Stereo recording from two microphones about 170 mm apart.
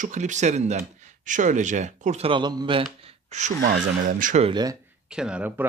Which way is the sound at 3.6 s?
55° right (ahead or behind).